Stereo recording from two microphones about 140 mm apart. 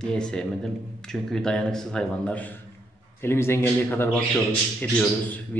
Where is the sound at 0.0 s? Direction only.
5° left (ahead or behind).